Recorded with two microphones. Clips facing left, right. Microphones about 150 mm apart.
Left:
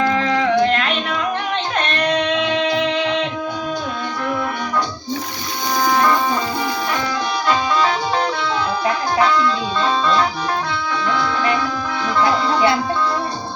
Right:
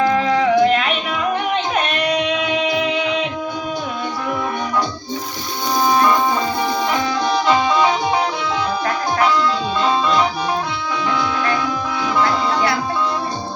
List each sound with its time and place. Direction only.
0.1 s a sound: 5° right (ahead or behind)
1.7 s music: 5° right (ahead or behind)
7.4 s music: 20° right (ahead or behind)
9.8 s music: 10° right (ahead or behind)